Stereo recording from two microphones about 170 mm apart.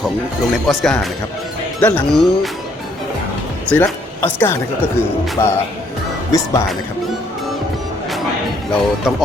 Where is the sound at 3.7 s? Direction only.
10° left (ahead or behind).